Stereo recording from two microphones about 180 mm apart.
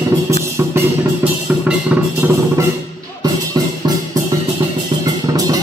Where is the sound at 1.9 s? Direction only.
10° right (ahead or behind).